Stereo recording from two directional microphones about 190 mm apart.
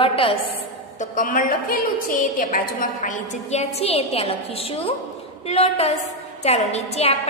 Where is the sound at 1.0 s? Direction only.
45° left (ahead or behind).